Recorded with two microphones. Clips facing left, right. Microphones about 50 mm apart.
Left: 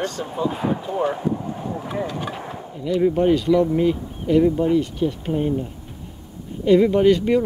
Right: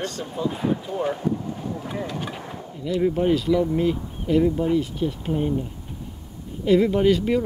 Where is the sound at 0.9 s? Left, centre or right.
Left.